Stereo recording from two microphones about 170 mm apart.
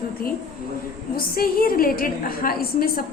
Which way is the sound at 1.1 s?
60° left (ahead or behind).